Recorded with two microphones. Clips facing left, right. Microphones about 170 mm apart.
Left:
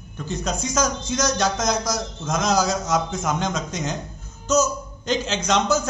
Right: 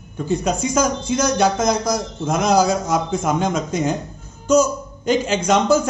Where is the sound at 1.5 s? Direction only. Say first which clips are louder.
Right 5 dB; 55° right (ahead or behind).